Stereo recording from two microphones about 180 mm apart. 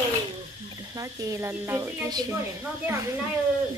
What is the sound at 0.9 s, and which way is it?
Speech, 20° right (ahead or behind).